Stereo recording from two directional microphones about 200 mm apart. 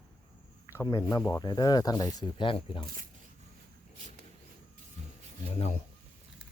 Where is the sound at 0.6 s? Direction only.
15° left (ahead or behind).